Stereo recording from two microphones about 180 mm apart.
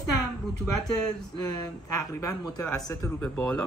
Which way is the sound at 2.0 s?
15° left (ahead or behind).